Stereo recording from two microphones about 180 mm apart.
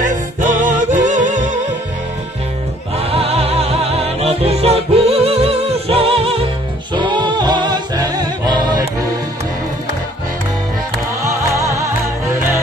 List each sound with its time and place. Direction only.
0.0 s music: 45° right (ahead or behind)
3.0 s music: 35° right (ahead or behind)
11.2 s music: 15° right (ahead or behind)